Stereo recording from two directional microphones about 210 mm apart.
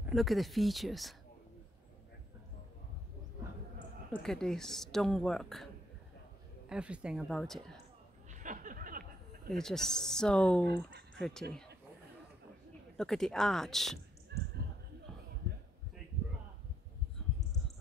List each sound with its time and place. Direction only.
0.0 s a woman's voice: centre (ahead or behind)
4.2 s a woman's voice: centre (ahead or behind)
6.7 s a woman's voice: 5° right (ahead or behind)
8.3 s a sound: 40° right (ahead or behind)
9.5 s a woman's voice: centre (ahead or behind)
12.9 s a woman's voice: centre (ahead or behind)
14.3 s a sound: 50° right (ahead or behind)